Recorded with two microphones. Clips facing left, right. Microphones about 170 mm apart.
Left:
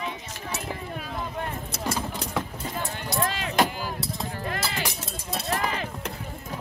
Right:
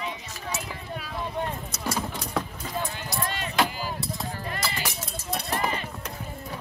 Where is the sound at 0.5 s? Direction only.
50° left (ahead or behind).